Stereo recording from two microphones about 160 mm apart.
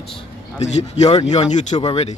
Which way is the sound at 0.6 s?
45° left (ahead or behind).